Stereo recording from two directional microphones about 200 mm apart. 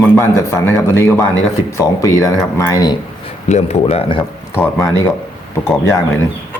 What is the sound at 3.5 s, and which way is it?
Speech, 35° left (ahead or behind).